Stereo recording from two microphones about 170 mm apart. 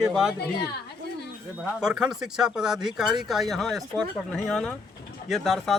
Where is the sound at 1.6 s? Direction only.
Centre (ahead or behind).